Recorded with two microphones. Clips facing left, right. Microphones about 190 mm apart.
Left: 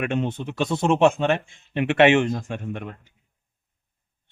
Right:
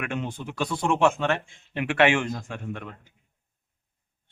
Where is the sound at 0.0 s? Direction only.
25° left (ahead or behind).